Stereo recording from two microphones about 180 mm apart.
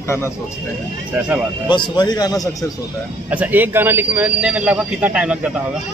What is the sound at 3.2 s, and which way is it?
A man's voice, 10° right (ahead or behind).